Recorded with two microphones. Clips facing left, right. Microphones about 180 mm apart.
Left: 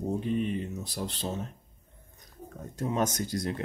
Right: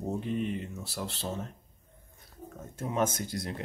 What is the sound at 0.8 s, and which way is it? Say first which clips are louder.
Speech: left 2 dB; 15° left (ahead or behind).